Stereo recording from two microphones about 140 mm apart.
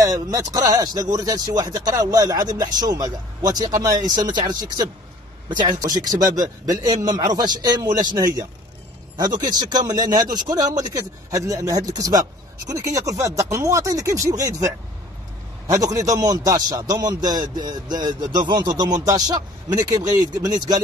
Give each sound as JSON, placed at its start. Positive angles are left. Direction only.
{"t": 0.0, "sound": "speech", "side_deg": -25}
{"t": 15.6, "sound": "speech", "side_deg": -25}